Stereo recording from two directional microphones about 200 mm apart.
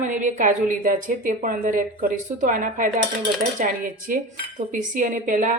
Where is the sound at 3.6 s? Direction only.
40° right (ahead or behind).